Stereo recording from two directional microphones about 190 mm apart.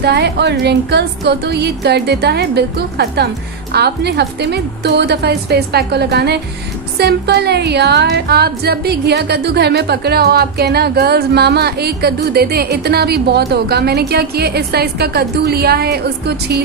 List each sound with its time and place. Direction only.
0.0 s music: 60° right (ahead or behind)